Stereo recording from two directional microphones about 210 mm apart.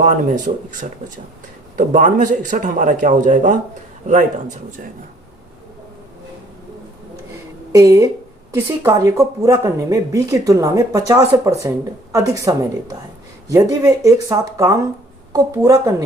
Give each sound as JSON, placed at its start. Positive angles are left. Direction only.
{"t": 0.0, "sound": "a man's voice", "side_deg": -40}
{"t": 7.7, "sound": "speech", "side_deg": -15}